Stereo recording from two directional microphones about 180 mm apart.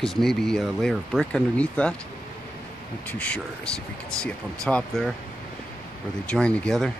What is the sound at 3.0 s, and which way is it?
Speech, 10° left (ahead or behind).